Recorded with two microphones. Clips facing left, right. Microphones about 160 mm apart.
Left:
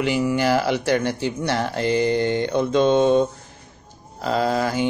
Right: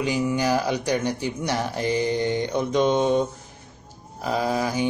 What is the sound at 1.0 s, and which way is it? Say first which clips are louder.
Speech: left 2 dB; 15° right (ahead or behind).